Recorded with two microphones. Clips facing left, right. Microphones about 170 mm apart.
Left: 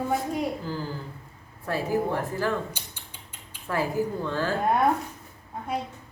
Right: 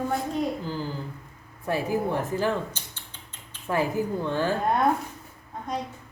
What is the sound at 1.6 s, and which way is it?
Speech, 15° right (ahead or behind).